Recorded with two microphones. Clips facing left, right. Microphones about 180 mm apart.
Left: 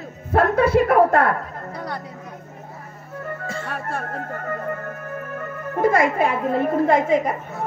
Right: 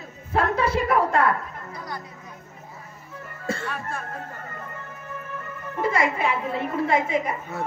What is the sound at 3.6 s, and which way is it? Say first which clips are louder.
Music: left 4 dB; 65° left (ahead or behind).